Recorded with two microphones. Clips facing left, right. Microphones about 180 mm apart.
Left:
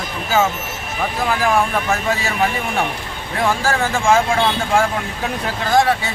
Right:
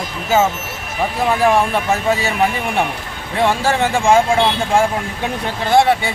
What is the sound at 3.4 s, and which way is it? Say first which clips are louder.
Speech: right 3 dB; 25° right (ahead or behind).